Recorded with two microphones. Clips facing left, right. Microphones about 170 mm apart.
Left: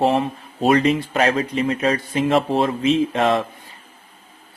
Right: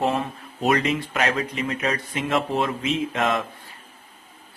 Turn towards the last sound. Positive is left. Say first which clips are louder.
# left 5 dB
turn(degrees=30)  # may be behind; listen again after turning